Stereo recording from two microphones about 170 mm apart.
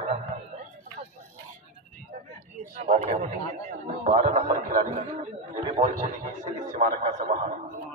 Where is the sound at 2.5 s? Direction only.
40° right (ahead or behind).